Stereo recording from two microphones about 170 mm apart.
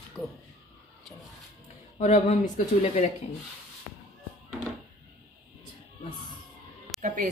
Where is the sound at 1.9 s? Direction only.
45° left (ahead or behind).